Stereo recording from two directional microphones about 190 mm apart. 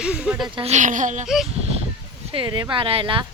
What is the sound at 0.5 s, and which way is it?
Speech, 35° right (ahead or behind).